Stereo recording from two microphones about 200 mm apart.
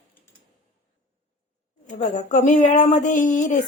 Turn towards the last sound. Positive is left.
turn(degrees=40)  # may be behind; listen again after turning